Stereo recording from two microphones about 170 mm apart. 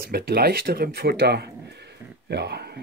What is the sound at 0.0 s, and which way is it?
Speech, 65° right (ahead or behind).